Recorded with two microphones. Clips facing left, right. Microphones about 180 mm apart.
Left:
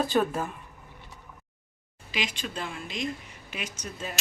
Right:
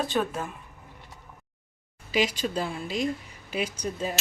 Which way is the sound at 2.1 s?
40° right (ahead or behind).